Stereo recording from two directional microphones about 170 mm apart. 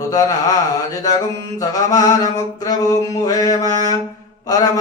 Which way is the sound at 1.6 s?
20° left (ahead or behind).